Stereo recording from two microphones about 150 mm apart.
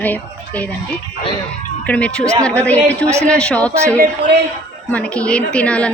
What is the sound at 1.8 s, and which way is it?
A woman's voice, 10° left (ahead or behind).